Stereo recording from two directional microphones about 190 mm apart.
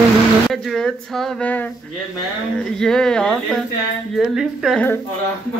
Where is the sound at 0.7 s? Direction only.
Centre (ahead or behind).